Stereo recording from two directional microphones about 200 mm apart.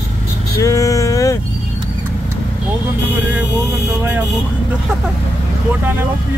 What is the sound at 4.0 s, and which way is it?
Speech, 10° right (ahead or behind).